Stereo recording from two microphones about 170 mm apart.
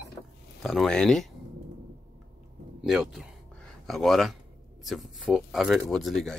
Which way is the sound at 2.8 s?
5° right (ahead or behind).